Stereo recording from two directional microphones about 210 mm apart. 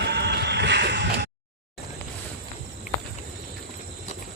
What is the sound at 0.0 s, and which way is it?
Music, 50° right (ahead or behind).